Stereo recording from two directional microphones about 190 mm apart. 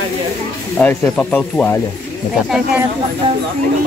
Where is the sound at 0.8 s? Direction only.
5° left (ahead or behind).